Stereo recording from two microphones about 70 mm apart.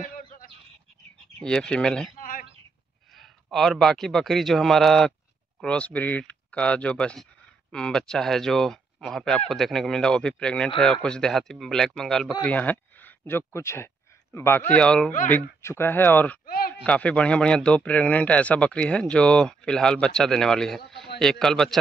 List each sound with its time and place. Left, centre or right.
1.4 s a man's voice: centre
3.5 s a man's voice: centre
5.6 s a man's voice: centre
12.4 s speech: left
14.8 s a man's voice: centre
15.6 s a man's voice: left; by 21.7 s centre